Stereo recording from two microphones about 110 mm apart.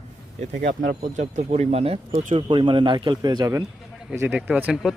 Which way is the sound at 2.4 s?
50° right (ahead or behind).